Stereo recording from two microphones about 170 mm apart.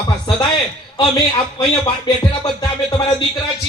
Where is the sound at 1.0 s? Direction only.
25° left (ahead or behind).